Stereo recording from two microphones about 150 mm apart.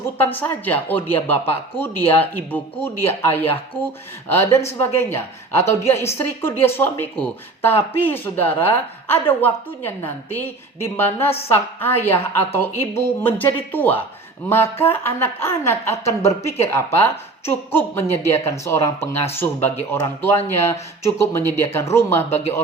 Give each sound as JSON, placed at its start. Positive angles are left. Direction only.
{"t": 0.2, "sound": "speech", "side_deg": 15}